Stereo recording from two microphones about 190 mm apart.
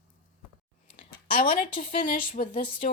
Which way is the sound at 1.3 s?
45° left (ahead or behind).